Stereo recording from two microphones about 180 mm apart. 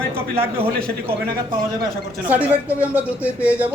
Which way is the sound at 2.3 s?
10° right (ahead or behind).